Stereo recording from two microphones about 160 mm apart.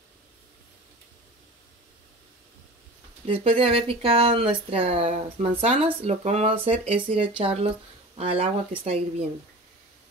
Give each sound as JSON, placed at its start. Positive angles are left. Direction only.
{"t": 3.3, "sound": "speech", "side_deg": -35}